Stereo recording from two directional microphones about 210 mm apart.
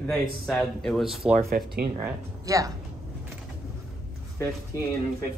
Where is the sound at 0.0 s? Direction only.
Centre (ahead or behind); by 2.7 s 15° right (ahead or behind).